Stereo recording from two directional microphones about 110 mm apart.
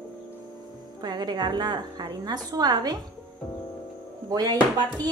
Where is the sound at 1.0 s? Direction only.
40° right (ahead or behind).